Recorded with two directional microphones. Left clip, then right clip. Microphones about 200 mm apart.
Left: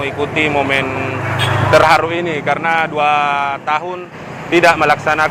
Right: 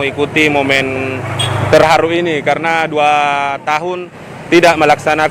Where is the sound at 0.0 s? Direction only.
55° right (ahead or behind).